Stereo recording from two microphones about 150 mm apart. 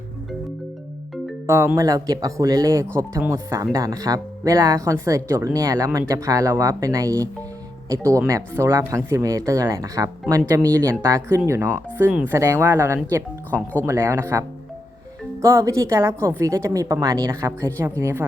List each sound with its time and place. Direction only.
1.5 s speech: 20° right (ahead or behind)
8.3 s speech: 20° right (ahead or behind)